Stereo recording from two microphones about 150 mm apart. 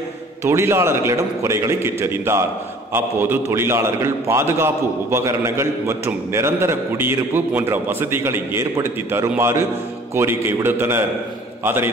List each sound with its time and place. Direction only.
0.4 s a man's voice: 15° right (ahead or behind)